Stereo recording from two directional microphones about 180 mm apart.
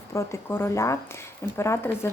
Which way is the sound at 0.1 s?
15° left (ahead or behind).